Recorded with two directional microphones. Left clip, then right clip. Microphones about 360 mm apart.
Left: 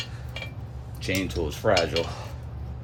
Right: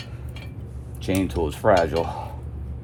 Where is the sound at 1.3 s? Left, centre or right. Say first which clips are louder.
Right 6 dB; centre.